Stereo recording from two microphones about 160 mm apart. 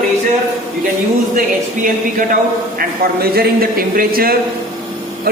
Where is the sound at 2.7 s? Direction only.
70° right (ahead or behind).